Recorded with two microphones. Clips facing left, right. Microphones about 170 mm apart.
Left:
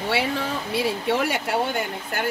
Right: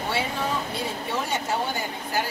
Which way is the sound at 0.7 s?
75° left (ahead or behind).